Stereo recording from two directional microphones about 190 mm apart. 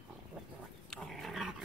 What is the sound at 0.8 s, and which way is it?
Dog, 5° left (ahead or behind).